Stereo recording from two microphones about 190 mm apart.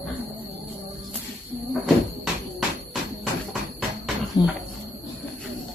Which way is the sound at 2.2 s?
Centre (ahead or behind).